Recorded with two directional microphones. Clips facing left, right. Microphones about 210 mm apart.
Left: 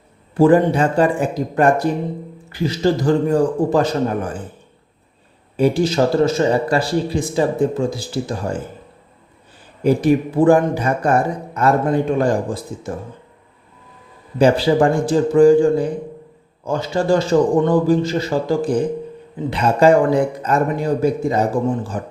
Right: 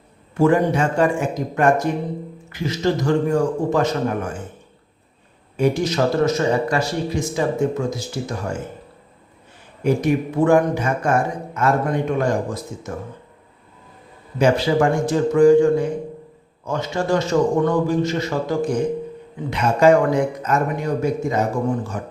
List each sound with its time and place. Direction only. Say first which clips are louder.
0.3 s speech: left 4 dB; 35° left (ahead or behind)
5.5 s speech: left 3 dB; 30° left (ahead or behind)
9.8 s speech: left 4 dB; 30° left (ahead or behind)
14.3 s speech: left 3 dB; 30° left (ahead or behind)